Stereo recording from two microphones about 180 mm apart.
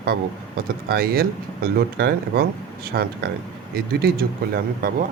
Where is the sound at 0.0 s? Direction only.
60° right (ahead or behind).